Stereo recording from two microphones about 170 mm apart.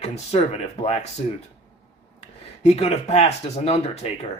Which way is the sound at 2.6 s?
40° left (ahead or behind).